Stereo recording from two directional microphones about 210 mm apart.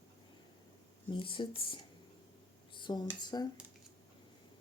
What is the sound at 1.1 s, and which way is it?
Speech, 25° left (ahead or behind).